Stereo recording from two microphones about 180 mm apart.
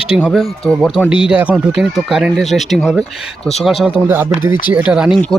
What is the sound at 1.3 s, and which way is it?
Speech, 10° right (ahead or behind).